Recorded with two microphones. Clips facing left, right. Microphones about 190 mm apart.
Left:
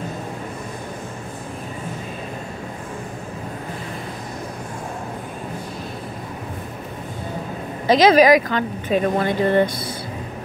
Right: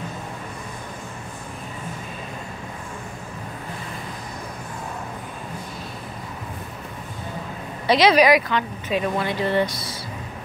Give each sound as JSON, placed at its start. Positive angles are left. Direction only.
{"t": 7.8, "sound": "speech", "side_deg": 45}